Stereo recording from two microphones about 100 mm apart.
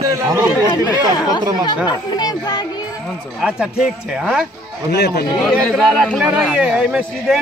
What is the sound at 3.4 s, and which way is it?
Speech, 5° right (ahead or behind).